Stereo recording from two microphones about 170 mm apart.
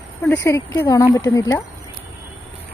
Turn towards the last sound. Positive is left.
turn(degrees=20)  # may be behind; listen again after turning